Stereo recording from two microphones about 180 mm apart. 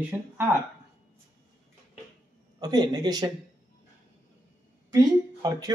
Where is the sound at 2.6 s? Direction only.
20° right (ahead or behind).